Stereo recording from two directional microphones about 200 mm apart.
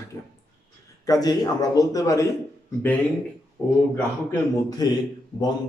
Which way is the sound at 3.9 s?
15° left (ahead or behind).